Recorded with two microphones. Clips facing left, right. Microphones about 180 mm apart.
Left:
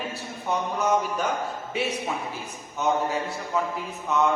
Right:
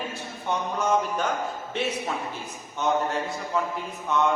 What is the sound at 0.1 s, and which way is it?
A man's voice, 10° left (ahead or behind).